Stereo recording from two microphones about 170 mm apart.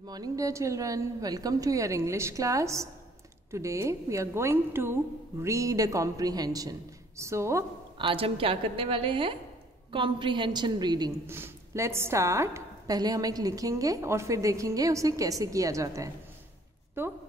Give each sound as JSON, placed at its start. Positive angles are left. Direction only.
{"t": 0.0, "sound": "a woman's voice", "side_deg": -20}
{"t": 8.0, "sound": "a woman's voice", "side_deg": -30}
{"t": 11.2, "sound": "a woman's voice", "side_deg": -15}